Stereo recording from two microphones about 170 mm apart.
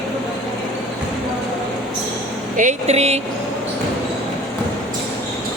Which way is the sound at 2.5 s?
45° right (ahead or behind).